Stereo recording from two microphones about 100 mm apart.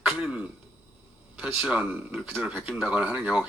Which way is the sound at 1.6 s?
10° right (ahead or behind).